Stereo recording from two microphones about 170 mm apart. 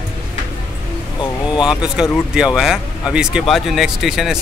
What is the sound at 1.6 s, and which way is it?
Speech, 5° right (ahead or behind).